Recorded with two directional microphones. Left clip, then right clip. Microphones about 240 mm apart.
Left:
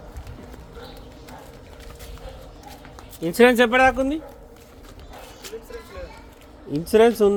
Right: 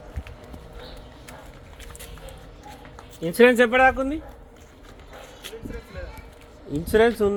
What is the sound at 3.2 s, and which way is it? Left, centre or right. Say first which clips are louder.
Speech: left 1 dB; centre.